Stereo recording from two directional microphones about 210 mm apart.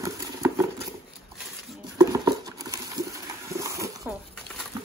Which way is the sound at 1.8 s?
20° right (ahead or behind).